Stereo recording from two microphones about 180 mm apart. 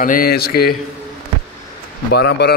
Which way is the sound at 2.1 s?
65° left (ahead or behind).